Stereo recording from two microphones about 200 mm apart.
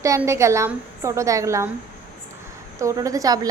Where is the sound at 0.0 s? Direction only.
15° right (ahead or behind).